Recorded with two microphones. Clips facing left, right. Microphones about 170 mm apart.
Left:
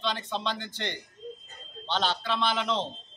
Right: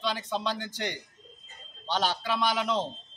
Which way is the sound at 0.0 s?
10° right (ahead or behind).